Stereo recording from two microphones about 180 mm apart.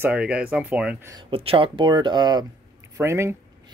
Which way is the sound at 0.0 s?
5° right (ahead or behind).